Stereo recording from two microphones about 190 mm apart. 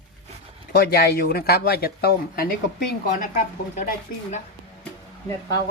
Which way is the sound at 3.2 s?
45° left (ahead or behind).